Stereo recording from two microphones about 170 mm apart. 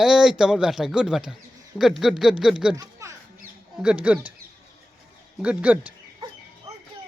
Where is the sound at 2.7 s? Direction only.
20° right (ahead or behind).